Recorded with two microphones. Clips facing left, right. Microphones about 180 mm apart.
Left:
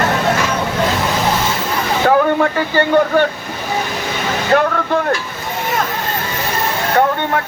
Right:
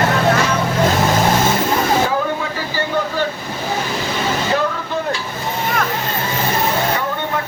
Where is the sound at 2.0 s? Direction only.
60° left (ahead or behind).